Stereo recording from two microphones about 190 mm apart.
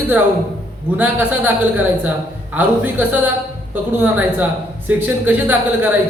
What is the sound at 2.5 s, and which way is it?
Speech, 10° right (ahead or behind).